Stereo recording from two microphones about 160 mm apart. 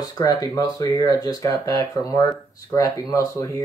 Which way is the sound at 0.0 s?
25° left (ahead or behind).